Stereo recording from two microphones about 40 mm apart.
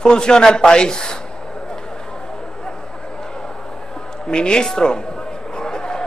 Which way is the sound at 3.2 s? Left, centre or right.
Centre.